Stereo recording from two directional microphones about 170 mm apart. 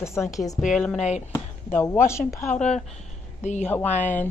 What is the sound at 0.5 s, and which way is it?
Speech, centre (ahead or behind).